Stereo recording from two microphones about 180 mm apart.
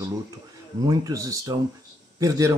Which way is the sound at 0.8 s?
20° right (ahead or behind).